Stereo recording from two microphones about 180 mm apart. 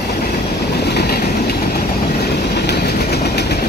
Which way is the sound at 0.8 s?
65° left (ahead or behind).